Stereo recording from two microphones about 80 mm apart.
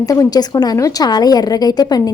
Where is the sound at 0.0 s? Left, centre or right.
Left.